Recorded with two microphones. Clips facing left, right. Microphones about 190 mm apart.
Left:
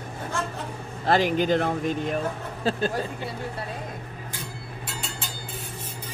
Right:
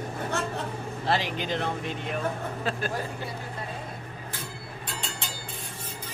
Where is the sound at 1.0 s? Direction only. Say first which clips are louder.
Left 7 dB; 45° left (ahead or behind).